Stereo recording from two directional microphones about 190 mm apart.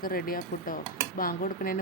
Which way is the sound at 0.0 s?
50° left (ahead or behind).